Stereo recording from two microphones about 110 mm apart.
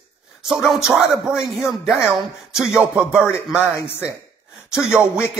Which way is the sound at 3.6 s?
25° left (ahead or behind).